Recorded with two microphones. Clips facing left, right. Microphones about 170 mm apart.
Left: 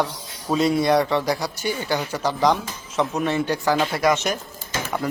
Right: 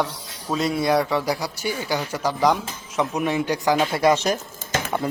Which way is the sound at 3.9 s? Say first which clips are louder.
Right 2 dB; 30° right (ahead or behind).